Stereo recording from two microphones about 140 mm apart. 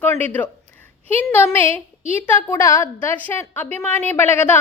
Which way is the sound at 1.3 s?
15° left (ahead or behind).